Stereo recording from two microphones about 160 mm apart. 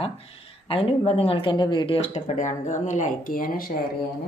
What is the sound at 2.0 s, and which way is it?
A woman's voice, 45° left (ahead or behind).